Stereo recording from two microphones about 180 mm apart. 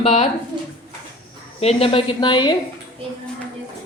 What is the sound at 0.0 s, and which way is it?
Speech, 35° left (ahead or behind).